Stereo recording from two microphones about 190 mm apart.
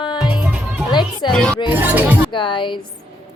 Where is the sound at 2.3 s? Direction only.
25° left (ahead or behind).